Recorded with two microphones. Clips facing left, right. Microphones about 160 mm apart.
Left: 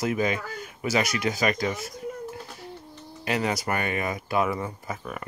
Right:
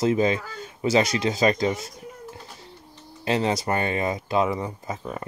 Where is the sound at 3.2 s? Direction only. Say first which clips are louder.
Right 3 dB; 25° right (ahead or behind).